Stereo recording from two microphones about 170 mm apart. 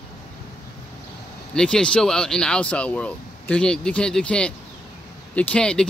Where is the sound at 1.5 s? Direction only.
5° left (ahead or behind).